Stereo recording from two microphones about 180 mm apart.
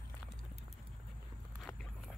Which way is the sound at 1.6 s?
5° left (ahead or behind).